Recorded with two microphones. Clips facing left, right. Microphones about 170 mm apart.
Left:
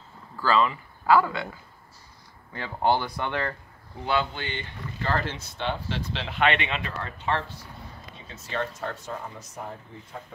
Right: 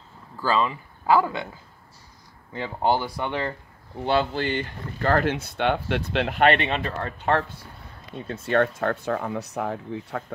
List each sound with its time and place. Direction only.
0.4 s speech: 20° right (ahead or behind)
2.5 s speech: 15° right (ahead or behind)
4.0 s speech: 35° right (ahead or behind)
8.2 s speech: 60° right (ahead or behind); by 10.2 s 75° right (ahead or behind)